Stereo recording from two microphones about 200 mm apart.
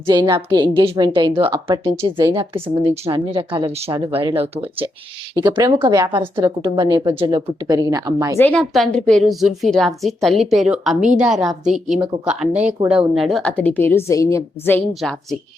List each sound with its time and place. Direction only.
0.1 s a woman's voice: 20° right (ahead or behind)
8.4 s a woman's voice: 5° left (ahead or behind)
12.8 s speech: 20° right (ahead or behind)
13.1 s a woman's voice: centre (ahead or behind)